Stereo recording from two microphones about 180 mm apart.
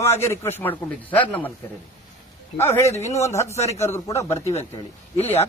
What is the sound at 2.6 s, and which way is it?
Speech, 15° left (ahead or behind).